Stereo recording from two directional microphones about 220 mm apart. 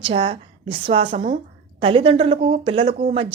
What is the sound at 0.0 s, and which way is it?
A woman's voice, 25° right (ahead or behind).